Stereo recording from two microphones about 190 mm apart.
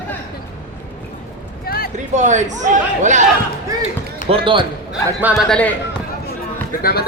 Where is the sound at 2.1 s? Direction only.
40° right (ahead or behind).